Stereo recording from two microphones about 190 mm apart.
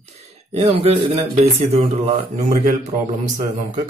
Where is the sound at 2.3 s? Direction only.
40° right (ahead or behind).